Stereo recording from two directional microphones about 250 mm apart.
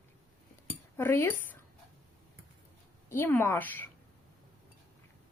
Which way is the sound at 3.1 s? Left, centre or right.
Centre.